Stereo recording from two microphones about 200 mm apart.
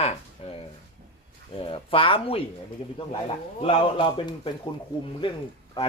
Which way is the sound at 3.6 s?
25° left (ahead or behind).